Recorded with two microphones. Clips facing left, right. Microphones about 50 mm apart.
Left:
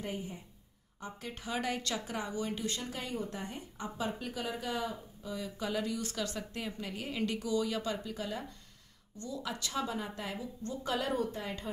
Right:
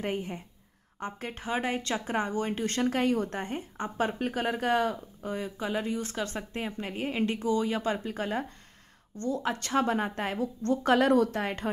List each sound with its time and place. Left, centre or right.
0.0 s speech: right
5.3 s a woman's voice: right